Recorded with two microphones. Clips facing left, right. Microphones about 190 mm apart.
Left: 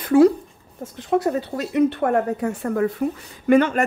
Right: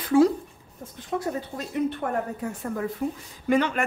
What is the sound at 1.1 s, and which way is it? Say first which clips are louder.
Speech: left 8 dB; 75° left (ahead or behind).